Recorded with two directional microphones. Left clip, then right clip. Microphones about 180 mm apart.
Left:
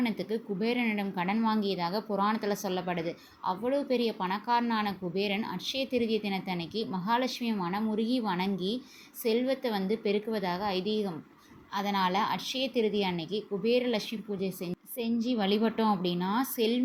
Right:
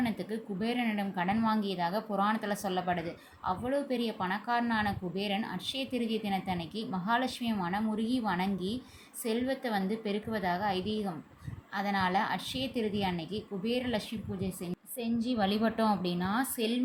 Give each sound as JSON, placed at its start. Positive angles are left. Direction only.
{"t": 0.0, "sound": "a woman's voice", "side_deg": 10}